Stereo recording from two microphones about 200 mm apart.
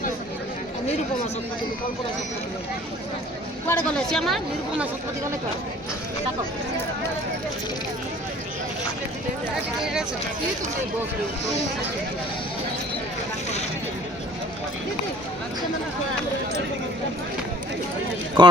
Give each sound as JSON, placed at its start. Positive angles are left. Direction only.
{"t": 3.7, "sound": "speech", "side_deg": 5}
{"t": 9.8, "sound": "speech", "side_deg": -5}
{"t": 18.4, "sound": "a man's voice", "side_deg": -20}